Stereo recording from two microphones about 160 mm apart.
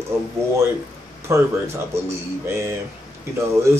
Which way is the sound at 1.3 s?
15° right (ahead or behind).